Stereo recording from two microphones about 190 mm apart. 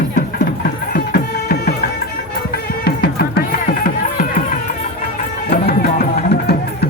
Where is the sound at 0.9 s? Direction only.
50° left (ahead or behind).